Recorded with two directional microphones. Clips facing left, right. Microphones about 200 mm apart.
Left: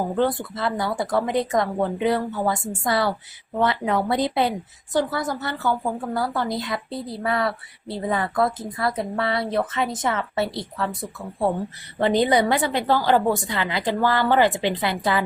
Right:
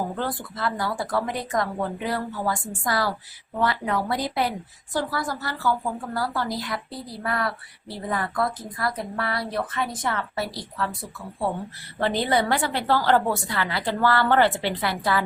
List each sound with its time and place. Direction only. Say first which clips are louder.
0.2 s a woman's voice: left 6 dB; 25° left (ahead or behind)
11.9 s a woman's voice: left 4 dB; 20° left (ahead or behind)